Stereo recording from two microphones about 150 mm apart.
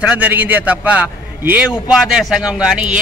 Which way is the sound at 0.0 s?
10° right (ahead or behind).